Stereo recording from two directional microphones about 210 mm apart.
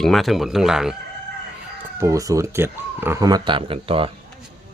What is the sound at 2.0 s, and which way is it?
Speech, 15° right (ahead or behind).